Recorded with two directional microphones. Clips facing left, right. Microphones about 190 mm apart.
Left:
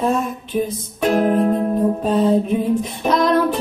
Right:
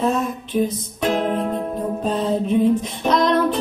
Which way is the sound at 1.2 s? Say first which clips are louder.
Left 5 dB; 40° left (ahead or behind).